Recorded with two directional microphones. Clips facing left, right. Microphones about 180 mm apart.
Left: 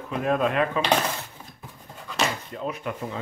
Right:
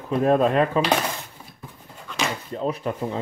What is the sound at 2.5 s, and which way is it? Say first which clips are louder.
Speech: right 5 dB; 35° right (ahead or behind).